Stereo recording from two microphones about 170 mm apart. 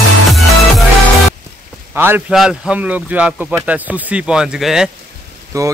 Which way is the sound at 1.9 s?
10° right (ahead or behind).